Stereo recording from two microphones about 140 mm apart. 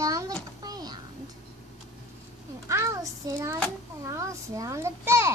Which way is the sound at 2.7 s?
20° right (ahead or behind).